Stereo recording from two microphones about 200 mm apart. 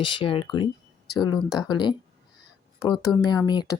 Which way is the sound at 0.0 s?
25° left (ahead or behind).